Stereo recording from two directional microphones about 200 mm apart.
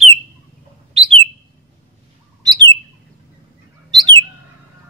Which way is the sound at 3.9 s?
20° right (ahead or behind).